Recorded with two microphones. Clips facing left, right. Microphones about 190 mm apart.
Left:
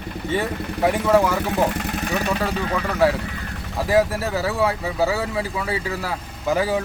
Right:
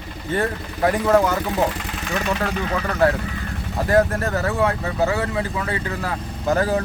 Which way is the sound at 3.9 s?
5° left (ahead or behind).